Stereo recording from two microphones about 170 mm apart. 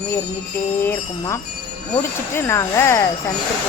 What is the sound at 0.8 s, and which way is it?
Speech, 15° left (ahead or behind).